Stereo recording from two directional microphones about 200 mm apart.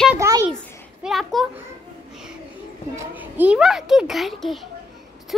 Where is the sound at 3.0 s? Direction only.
10° right (ahead or behind).